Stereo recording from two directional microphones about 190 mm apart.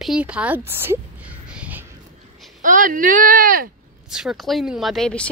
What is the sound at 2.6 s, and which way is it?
Speech, 45° right (ahead or behind).